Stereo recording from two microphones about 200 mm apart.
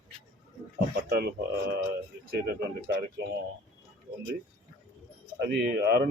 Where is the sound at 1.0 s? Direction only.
55° right (ahead or behind).